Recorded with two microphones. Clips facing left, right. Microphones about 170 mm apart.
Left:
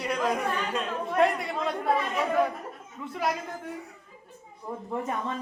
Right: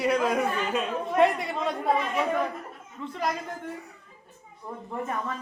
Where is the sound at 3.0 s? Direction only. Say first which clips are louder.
Right 2 dB; 10° left (ahead or behind).